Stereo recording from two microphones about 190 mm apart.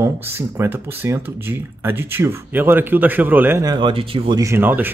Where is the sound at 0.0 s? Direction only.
10° right (ahead or behind).